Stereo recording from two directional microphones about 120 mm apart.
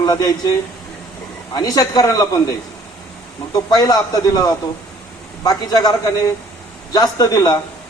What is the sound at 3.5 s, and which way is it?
A man's voice, 30° left (ahead or behind).